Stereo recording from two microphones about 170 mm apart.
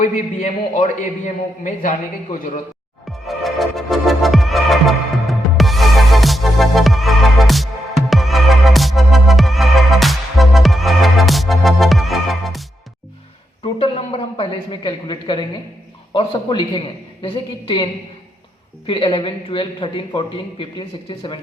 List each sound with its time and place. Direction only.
0.0 s a man's voice: 45° left (ahead or behind)
3.1 s music: centre (ahead or behind)
13.6 s a man's voice: 35° left (ahead or behind)
18.9 s a man's voice: 30° left (ahead or behind)